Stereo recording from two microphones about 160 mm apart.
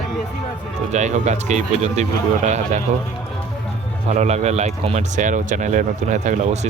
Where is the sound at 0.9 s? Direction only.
45° right (ahead or behind).